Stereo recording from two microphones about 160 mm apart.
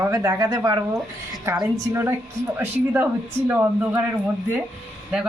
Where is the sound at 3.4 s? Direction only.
10° right (ahead or behind).